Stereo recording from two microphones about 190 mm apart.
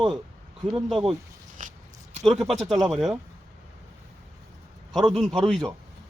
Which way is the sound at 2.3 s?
Centre (ahead or behind).